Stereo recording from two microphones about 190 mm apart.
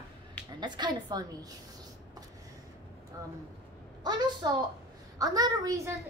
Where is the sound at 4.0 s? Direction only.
20° right (ahead or behind).